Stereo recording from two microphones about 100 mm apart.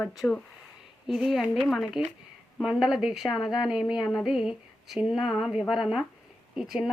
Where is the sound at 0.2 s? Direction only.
15° left (ahead or behind).